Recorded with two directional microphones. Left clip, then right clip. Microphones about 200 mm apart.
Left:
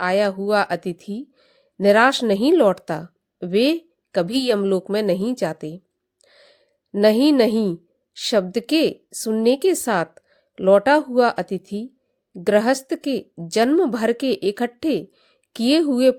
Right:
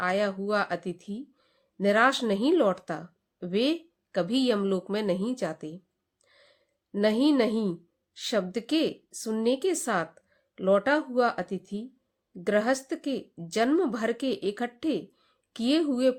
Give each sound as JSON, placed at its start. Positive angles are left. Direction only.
{"t": 0.0, "sound": "a woman's voice", "side_deg": 35}